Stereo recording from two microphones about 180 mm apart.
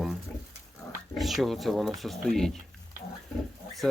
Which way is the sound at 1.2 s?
Centre (ahead or behind).